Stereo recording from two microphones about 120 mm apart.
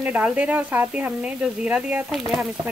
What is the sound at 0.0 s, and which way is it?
Speech, 10° right (ahead or behind).